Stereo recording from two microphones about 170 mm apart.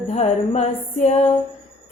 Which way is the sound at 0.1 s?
40° left (ahead or behind).